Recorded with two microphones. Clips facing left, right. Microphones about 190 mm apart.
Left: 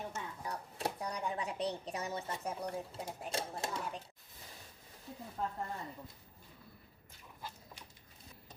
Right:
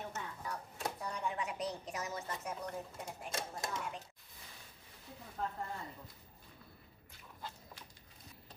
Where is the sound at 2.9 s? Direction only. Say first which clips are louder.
Left 3 dB; 30° left (ahead or behind).